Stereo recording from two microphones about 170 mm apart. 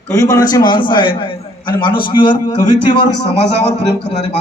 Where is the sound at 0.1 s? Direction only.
20° left (ahead or behind).